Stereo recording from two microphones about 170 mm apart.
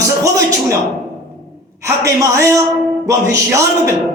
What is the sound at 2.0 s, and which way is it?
A man's voice, 15° right (ahead or behind).